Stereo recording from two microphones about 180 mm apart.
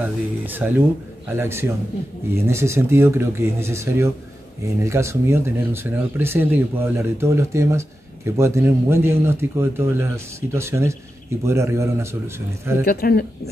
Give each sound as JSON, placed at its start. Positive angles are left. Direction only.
{"t": 0.0, "sound": "a man's voice", "side_deg": -10}
{"t": 12.8, "sound": "speech", "side_deg": 60}